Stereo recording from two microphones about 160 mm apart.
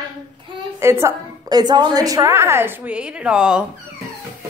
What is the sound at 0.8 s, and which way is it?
A woman's voice, 15° right (ahead or behind).